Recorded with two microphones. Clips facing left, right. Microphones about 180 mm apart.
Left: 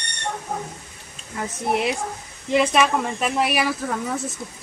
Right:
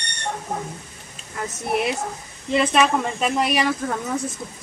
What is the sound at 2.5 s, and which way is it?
Speech, 10° left (ahead or behind).